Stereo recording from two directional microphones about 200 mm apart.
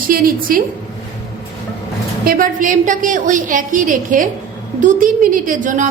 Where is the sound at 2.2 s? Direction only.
40° right (ahead or behind).